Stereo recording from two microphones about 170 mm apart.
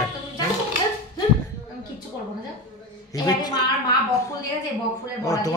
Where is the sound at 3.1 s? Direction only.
25° left (ahead or behind).